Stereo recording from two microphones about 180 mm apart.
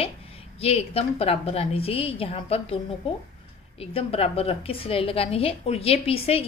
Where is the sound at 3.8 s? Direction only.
35° left (ahead or behind).